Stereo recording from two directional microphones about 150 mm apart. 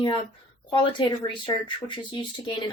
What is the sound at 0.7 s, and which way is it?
Speech, 30° left (ahead or behind).